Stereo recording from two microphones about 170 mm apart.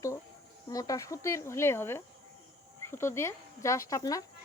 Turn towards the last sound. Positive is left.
turn(degrees=20)  # may be behind; listen again after turning